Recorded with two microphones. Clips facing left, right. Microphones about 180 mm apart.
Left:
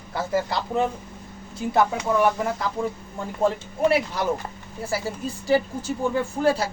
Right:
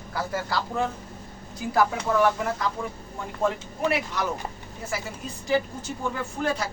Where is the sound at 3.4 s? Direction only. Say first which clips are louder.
Left 4 dB; 30° left (ahead or behind).